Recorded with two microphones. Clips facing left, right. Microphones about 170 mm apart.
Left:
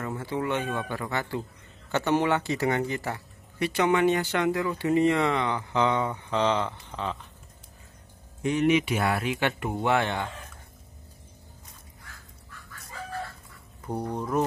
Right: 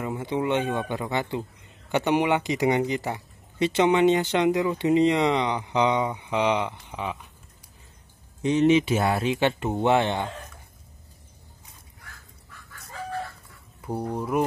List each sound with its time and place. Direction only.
0.0 s speech: 15° right (ahead or behind)
8.4 s speech: 25° right (ahead or behind)
13.7 s speech: 5° right (ahead or behind)